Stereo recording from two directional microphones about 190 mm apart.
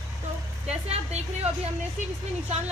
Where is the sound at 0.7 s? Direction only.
35° right (ahead or behind).